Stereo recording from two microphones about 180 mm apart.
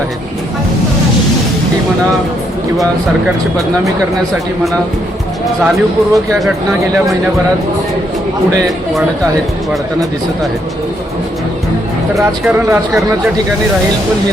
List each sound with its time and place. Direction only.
5.6 s speech: centre (ahead or behind)
8.6 s speech: centre (ahead or behind)
12.1 s speech: 5° right (ahead or behind)